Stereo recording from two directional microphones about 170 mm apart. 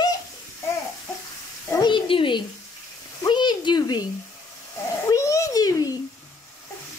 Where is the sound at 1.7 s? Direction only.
25° left (ahead or behind).